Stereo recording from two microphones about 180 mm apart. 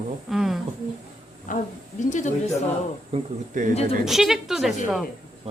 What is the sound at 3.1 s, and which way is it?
Speech, 45° right (ahead or behind).